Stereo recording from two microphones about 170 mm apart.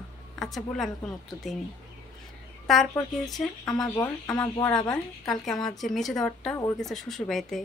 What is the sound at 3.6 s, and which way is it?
Speech, 20° left (ahead or behind).